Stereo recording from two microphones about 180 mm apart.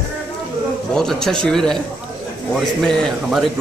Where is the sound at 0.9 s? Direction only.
5° left (ahead or behind).